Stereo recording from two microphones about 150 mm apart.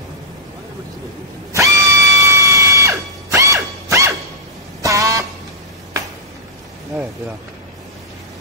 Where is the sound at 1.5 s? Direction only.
20° right (ahead or behind).